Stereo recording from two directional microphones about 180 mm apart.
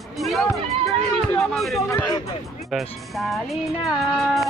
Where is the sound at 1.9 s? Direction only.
15° left (ahead or behind).